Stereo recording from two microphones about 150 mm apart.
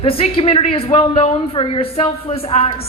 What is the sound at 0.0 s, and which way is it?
A man's voice, 40° left (ahead or behind).